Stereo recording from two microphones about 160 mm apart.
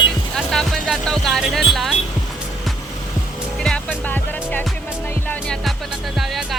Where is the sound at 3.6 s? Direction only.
5° left (ahead or behind).